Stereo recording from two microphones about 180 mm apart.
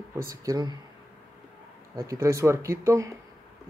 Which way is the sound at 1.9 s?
20° right (ahead or behind).